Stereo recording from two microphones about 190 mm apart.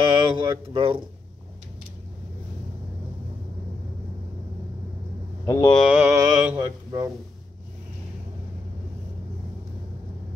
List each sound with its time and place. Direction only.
0.1 s speech: 25° right (ahead or behind)
5.5 s mantra: 25° left (ahead or behind)
5.9 s mantra: 5° right (ahead or behind)